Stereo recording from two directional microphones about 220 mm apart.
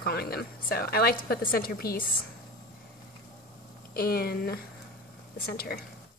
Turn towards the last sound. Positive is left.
turn(degrees=45)  # may be behind; listen again after turning